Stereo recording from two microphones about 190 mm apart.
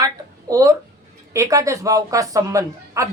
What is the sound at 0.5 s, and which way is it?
Speech, 15° right (ahead or behind).